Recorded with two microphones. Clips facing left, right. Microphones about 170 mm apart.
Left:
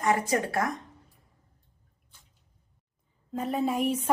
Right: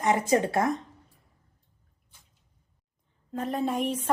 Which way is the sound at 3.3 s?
5° left (ahead or behind).